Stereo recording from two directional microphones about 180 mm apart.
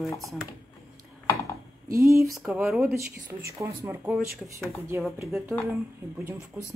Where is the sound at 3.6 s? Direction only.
15° right (ahead or behind).